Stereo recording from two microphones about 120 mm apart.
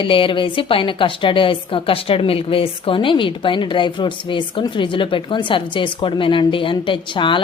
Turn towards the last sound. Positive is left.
turn(degrees=45)  # may be behind; listen again after turning